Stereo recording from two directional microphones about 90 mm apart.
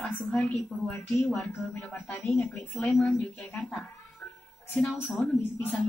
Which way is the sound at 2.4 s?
20° left (ahead or behind).